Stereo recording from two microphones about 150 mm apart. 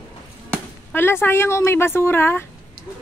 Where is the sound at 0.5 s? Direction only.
15° left (ahead or behind).